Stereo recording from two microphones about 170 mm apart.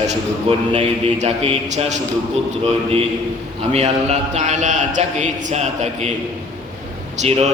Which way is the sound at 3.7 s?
40° right (ahead or behind).